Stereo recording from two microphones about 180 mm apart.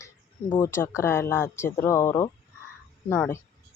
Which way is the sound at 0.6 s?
15° left (ahead or behind).